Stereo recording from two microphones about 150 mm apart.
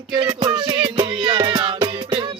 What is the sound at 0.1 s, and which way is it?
Music, 30° right (ahead or behind).